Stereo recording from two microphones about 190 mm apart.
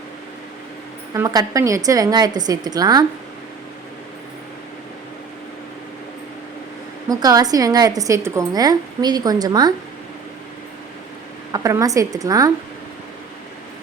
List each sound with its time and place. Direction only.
1.1 s a woman's voice: 15° right (ahead or behind)
7.1 s a woman's voice: 20° right (ahead or behind)
11.5 s a woman's voice: 20° right (ahead or behind)